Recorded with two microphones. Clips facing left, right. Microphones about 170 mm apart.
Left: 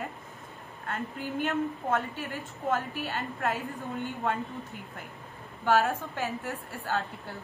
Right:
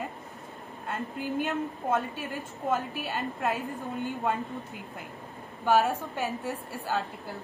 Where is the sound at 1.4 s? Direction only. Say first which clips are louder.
Left 5 dB; 15° right (ahead or behind).